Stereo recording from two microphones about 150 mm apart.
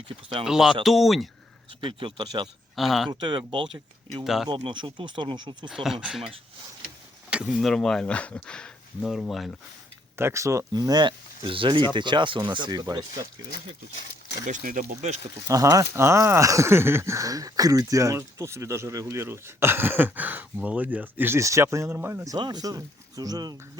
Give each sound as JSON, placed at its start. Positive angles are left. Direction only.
{"t": 0.4, "sound": "speech", "side_deg": -5}
{"t": 1.8, "sound": "speech", "side_deg": -35}
{"t": 2.7, "sound": "speech", "side_deg": 0}
{"t": 3.1, "sound": "speech", "side_deg": -30}
{"t": 4.2, "sound": "speech", "side_deg": 0}
{"t": 4.4, "sound": "speech", "side_deg": -35}
{"t": 5.6, "sound": "speech", "side_deg": 0}
{"t": 7.3, "sound": "speech", "side_deg": -5}
{"t": 10.2, "sound": "speech", "side_deg": -20}
{"t": 14.4, "sound": "speech", "side_deg": -60}
{"t": 15.4, "sound": "speech", "side_deg": -20}